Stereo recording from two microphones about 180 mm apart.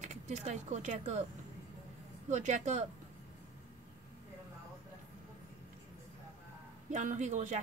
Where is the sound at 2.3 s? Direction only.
40° right (ahead or behind).